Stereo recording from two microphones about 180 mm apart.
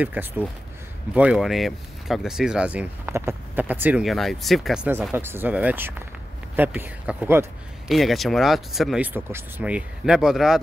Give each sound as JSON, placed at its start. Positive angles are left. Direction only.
{"t": 0.0, "sound": "speech", "side_deg": -10}
{"t": 7.9, "sound": "speech", "side_deg": 0}